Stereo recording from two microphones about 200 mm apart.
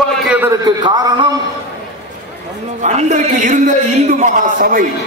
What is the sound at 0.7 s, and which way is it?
Speech, 20° right (ahead or behind).